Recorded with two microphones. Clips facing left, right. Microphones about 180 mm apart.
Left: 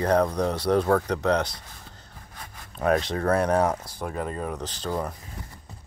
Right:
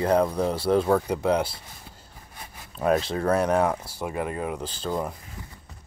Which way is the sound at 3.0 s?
25° right (ahead or behind).